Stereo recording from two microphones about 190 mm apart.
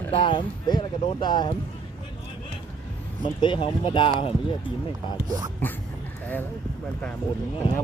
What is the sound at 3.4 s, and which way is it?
Speech, 25° left (ahead or behind).